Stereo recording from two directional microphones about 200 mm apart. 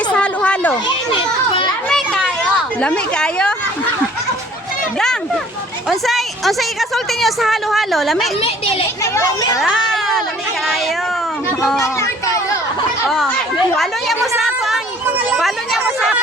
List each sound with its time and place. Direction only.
0.1 s a sound: 5° left (ahead or behind)
1.9 s children playing: centre (ahead or behind)
2.8 s a woman's voice: 5° left (ahead or behind)
5.9 s a woman's voice: centre (ahead or behind)
8.4 s a child's voice: 30° left (ahead or behind)
9.1 s speech: 20° left (ahead or behind)
9.6 s a sound: centre (ahead or behind)
11.4 s a woman's voice: 5° left (ahead or behind)
11.8 s speech: 15° left (ahead or behind)
13.1 s a woman's voice: centre (ahead or behind)